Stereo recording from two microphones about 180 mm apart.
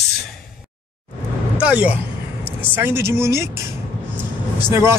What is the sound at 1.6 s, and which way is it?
Speech, 10° right (ahead or behind).